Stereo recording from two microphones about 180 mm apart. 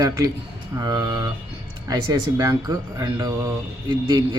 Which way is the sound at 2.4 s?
20° right (ahead or behind).